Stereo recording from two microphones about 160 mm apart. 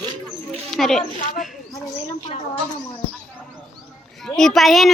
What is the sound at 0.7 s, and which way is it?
Speech, centre (ahead or behind).